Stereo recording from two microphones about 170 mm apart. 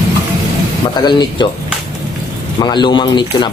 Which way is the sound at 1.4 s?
25° left (ahead or behind).